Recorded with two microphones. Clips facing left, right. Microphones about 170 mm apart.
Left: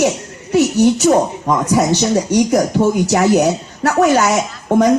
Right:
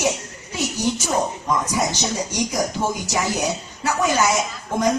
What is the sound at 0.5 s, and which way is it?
Speech, 65° left (ahead or behind).